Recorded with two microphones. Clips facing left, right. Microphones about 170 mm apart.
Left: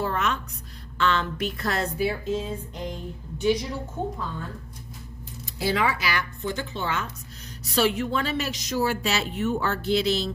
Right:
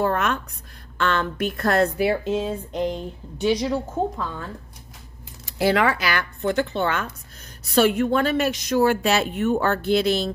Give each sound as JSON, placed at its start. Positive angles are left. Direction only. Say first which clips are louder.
{"t": 0.0, "sound": "a sound", "louder": "right 4 dB", "side_deg": -55}
{"t": 0.9, "sound": "a woman's voice", "louder": "right 2 dB", "side_deg": -55}
{"t": 5.6, "sound": "a woman's voice", "louder": "right 5 dB", "side_deg": -65}